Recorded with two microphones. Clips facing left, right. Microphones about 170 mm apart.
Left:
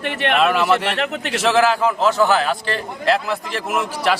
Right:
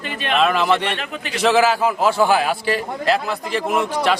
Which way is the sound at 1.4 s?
Centre (ahead or behind).